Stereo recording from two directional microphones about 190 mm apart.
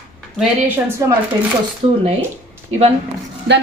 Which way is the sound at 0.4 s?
10° right (ahead or behind).